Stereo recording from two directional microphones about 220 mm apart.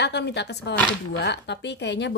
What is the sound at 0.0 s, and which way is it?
Speech, 50° left (ahead or behind).